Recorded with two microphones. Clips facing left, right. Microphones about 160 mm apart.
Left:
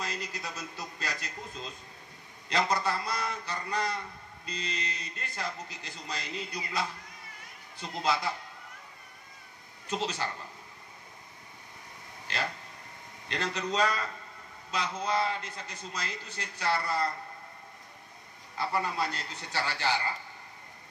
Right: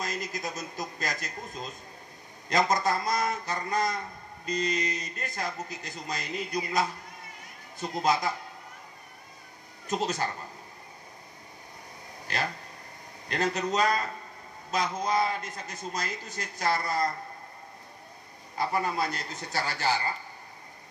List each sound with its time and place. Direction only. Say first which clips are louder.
0.0 s a man's voice: right 4 dB; 40° right (ahead or behind)
9.8 s a man's voice: right 4 dB; 40° right (ahead or behind)
13.3 s a man's voice: right 4 dB; 40° right (ahead or behind)
18.6 s a man's voice: right 3 dB; 40° right (ahead or behind)